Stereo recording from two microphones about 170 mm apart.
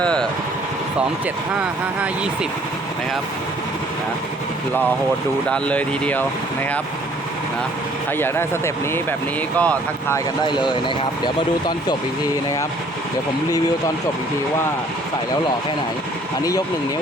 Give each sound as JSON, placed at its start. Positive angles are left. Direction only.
{"t": 0.0, "sound": "vehicle", "side_deg": 5}
{"t": 2.0, "sound": "speech", "side_deg": -5}
{"t": 5.5, "sound": "speech", "side_deg": 5}
{"t": 8.2, "sound": "speech", "side_deg": 15}
{"t": 10.4, "sound": "speech", "side_deg": 25}